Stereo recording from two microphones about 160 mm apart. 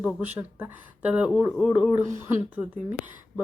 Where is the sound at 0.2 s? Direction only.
10° right (ahead or behind).